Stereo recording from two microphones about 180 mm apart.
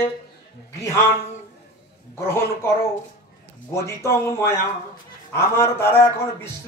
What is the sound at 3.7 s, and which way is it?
Speech, 15° left (ahead or behind).